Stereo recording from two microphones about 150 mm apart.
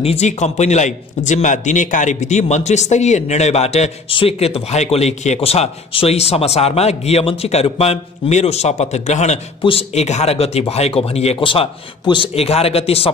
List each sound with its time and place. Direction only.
0.0 s a man's voice: 45° left (ahead or behind)